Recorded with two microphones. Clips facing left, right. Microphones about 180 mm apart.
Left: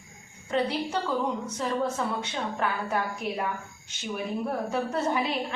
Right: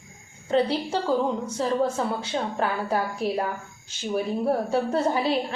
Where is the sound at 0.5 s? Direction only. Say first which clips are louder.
Right 4 dB; 30° right (ahead or behind).